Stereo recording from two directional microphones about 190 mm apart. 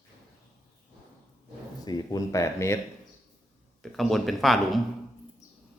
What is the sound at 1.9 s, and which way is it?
Speech, 20° left (ahead or behind).